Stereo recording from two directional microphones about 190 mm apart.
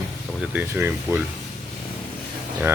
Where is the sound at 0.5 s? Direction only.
10° right (ahead or behind).